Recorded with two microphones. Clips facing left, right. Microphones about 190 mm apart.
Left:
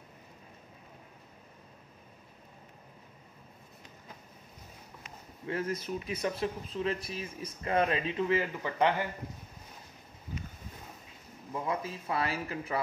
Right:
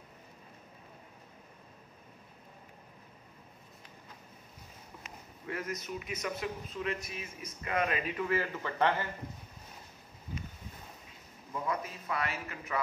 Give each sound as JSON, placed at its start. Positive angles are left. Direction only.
{"t": 5.5, "sound": "speech", "side_deg": 30}
{"t": 11.6, "sound": "speech", "side_deg": 25}